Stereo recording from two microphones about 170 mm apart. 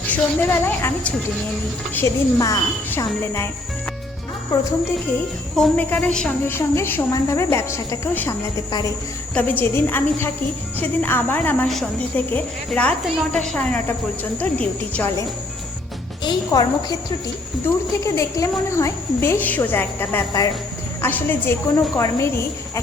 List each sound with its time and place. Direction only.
0.1 s a woman's voice: 15° left (ahead or behind)
5.5 s a woman's voice: 5° left (ahead or behind)
16.2 s a woman's voice: 20° left (ahead or behind)
18.0 s a woman's voice: 15° left (ahead or behind)